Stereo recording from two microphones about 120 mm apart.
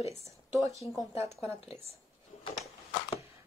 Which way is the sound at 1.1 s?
25° right (ahead or behind).